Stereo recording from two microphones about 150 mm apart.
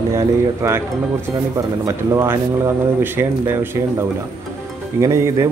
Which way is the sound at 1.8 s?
20° right (ahead or behind).